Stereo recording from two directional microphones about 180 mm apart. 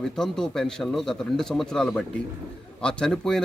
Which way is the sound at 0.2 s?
5° left (ahead or behind).